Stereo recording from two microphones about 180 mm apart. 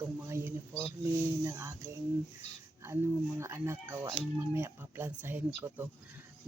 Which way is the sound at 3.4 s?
15° right (ahead or behind).